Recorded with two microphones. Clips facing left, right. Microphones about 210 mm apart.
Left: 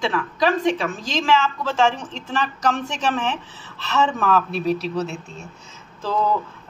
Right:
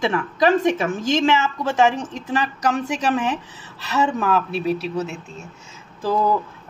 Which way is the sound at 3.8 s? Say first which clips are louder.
Even; 5° right (ahead or behind).